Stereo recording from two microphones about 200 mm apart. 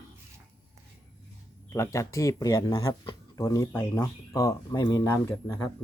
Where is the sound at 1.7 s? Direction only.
15° left (ahead or behind).